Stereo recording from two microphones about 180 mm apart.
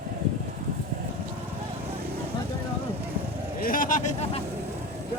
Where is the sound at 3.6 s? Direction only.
50° left (ahead or behind).